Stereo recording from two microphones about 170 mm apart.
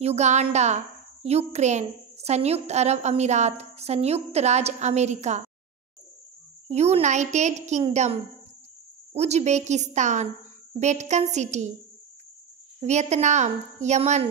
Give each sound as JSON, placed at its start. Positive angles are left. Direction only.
{"t": 0.0, "sound": "a woman's voice", "side_deg": -40}
{"t": 6.7, "sound": "a woman's voice", "side_deg": -40}
{"t": 12.8, "sound": "a woman's voice", "side_deg": -40}